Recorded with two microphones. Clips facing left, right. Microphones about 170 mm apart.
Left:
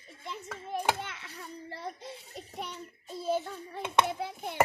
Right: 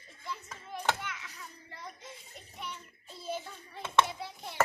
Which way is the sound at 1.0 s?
30° left (ahead or behind).